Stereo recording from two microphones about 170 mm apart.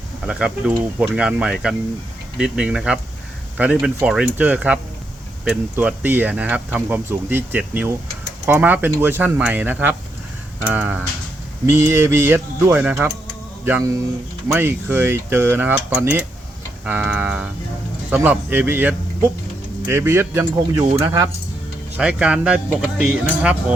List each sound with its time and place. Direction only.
0.3 s speech: 5° right (ahead or behind)
16.8 s speech: 5° right (ahead or behind)
21.9 s speech: 5° right (ahead or behind)